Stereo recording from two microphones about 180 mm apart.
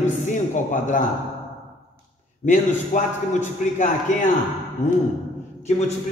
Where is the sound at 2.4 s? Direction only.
45° left (ahead or behind).